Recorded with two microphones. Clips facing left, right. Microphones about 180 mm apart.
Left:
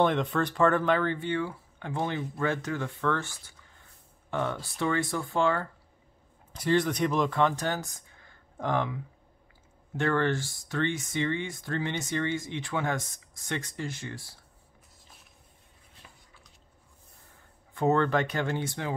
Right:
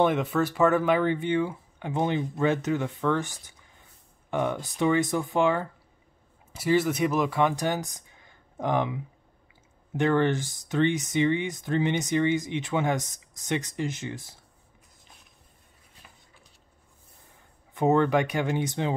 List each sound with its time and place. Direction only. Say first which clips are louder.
0.0 s speech: right 2 dB; 5° right (ahead or behind)
6.5 s speech: right 2 dB; 5° right (ahead or behind)
17.7 s speech: right 3 dB; 15° right (ahead or behind)